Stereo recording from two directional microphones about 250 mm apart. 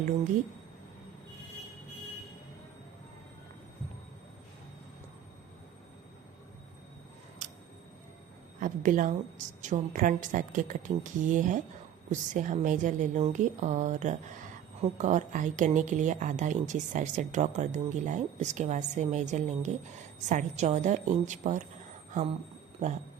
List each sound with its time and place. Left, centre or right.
8.6 s a woman's voice: right